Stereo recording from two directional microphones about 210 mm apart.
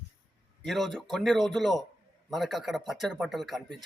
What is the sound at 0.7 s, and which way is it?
Speech, centre (ahead or behind).